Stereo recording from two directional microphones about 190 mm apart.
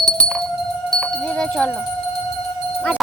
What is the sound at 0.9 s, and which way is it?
Sheep, 5° left (ahead or behind).